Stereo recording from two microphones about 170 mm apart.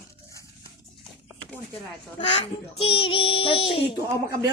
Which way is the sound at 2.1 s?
35° left (ahead or behind).